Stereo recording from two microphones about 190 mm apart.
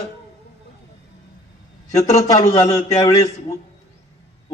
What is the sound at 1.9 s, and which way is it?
A man's voice, 15° left (ahead or behind).